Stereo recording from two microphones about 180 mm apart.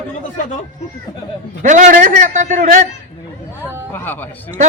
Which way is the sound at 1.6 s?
45° right (ahead or behind).